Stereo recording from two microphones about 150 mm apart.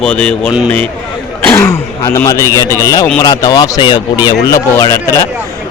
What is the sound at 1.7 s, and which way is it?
A man's voice, 20° left (ahead or behind).